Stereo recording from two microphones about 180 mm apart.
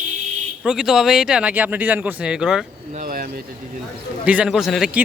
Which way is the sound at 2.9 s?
50° right (ahead or behind).